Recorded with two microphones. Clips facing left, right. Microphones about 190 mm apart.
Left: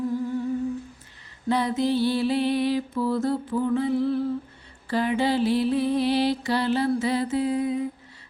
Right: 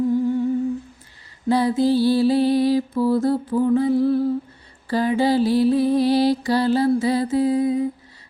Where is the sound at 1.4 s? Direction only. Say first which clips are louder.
Right 5 dB; 35° right (ahead or behind).